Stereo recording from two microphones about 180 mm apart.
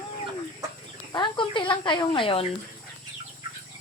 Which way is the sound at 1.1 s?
25° left (ahead or behind).